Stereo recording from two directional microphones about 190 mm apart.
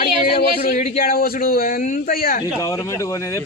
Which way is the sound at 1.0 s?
50° left (ahead or behind).